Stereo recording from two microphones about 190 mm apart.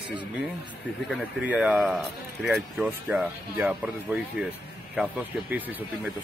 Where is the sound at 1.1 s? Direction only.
5° right (ahead or behind).